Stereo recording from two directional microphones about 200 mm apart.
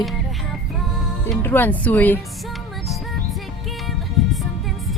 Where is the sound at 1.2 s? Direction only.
10° left (ahead or behind).